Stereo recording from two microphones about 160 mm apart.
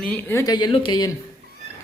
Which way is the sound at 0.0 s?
10° left (ahead or behind).